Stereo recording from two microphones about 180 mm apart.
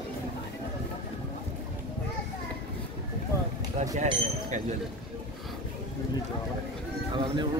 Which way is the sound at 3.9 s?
40° right (ahead or behind).